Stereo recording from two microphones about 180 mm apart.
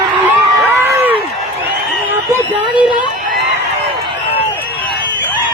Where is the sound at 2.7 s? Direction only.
10° right (ahead or behind).